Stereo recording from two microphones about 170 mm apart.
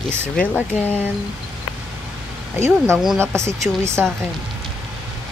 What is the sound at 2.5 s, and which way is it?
Speech, 15° right (ahead or behind).